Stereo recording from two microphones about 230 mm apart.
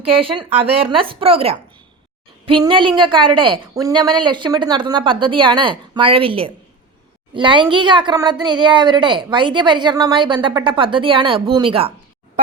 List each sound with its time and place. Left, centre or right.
0.1 s a woman's voice: right